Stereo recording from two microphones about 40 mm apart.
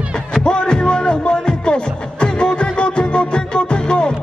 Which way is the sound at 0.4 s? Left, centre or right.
Left.